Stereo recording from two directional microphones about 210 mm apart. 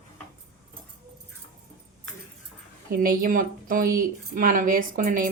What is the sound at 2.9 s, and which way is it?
Speech, 40° right (ahead or behind).